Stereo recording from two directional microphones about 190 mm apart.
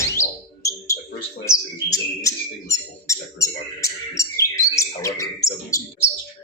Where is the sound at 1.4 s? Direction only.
15° left (ahead or behind).